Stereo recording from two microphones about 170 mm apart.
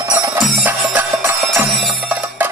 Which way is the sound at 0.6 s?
10° right (ahead or behind).